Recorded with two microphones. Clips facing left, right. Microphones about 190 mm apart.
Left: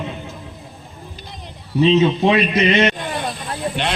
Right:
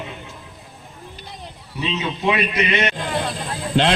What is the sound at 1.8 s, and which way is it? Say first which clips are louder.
Speech: left 11 dB; 35° left (ahead or behind).